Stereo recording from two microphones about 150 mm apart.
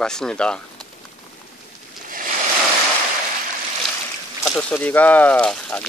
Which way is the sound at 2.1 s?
65° right (ahead or behind).